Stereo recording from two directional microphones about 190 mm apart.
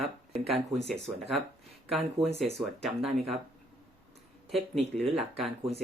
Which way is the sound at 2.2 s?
35° right (ahead or behind).